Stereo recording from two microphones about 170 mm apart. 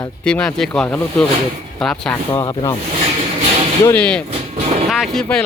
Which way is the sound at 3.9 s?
5° left (ahead or behind).